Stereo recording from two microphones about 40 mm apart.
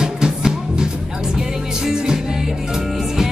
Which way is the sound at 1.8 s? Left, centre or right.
Centre.